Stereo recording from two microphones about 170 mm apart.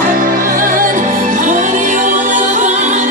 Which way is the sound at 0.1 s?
55° right (ahead or behind).